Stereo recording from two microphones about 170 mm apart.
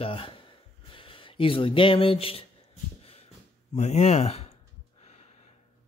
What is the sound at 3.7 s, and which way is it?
Speech, 40° left (ahead or behind).